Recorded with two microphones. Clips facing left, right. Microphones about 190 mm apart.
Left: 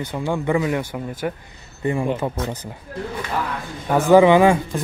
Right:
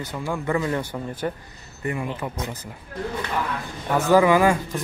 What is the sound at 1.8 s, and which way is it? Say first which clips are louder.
Speech: left 6 dB; 25° left (ahead or behind).